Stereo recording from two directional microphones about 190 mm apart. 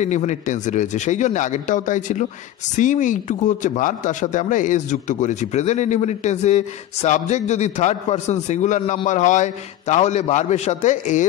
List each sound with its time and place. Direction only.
0.0 s a man's voice: 40° left (ahead or behind)